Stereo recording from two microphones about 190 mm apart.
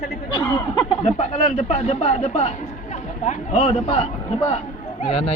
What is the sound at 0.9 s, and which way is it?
Speech, 35° left (ahead or behind).